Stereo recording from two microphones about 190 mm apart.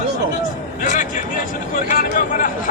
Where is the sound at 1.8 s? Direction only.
45° left (ahead or behind).